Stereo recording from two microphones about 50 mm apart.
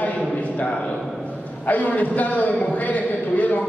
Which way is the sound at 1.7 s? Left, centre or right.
Left.